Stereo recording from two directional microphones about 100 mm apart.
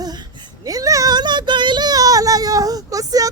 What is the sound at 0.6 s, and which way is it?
A woman's voice, 35° right (ahead or behind).